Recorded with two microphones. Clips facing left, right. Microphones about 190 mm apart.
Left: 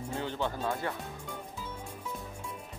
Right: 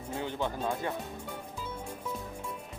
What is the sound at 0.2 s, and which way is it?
Speech, 15° right (ahead or behind).